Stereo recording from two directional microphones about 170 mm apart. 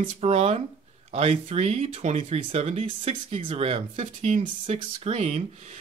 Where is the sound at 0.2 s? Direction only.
40° right (ahead or behind).